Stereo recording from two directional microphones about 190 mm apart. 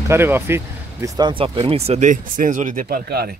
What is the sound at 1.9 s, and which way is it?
Speech, 40° right (ahead or behind).